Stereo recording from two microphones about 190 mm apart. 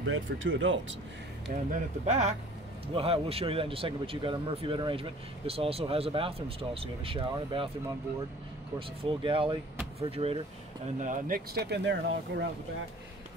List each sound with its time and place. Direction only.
0.0 s speech: 80° right
1.5 s speech: 45° right (ahead or behind)
2.0 s speech: 35° right (ahead or behind)
8.7 s speech: 30° right (ahead or behind)
11.0 s speech: 45° right (ahead or behind); by 12.4 s 65° right (ahead or behind)